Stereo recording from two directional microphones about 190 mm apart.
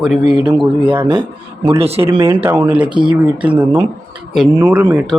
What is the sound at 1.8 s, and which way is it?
Speech, 30° right (ahead or behind).